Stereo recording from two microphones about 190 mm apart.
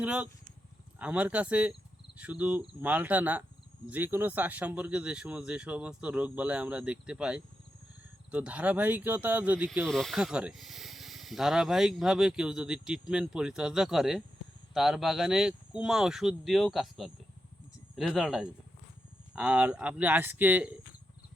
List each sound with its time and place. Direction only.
0.0 s speech: 5° right (ahead or behind)